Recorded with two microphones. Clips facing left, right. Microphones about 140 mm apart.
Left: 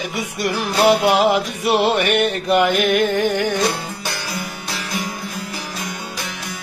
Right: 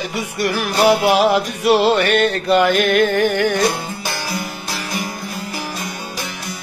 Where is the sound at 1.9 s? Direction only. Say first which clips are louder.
Right 2 dB; 20° left (ahead or behind).